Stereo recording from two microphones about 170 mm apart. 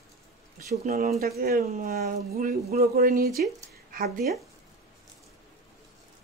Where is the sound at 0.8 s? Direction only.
60° right (ahead or behind).